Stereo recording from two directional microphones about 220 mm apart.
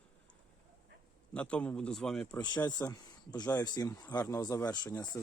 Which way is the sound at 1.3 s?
5° left (ahead or behind).